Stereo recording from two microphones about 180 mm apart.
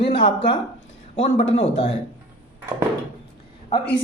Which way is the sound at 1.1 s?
35° left (ahead or behind).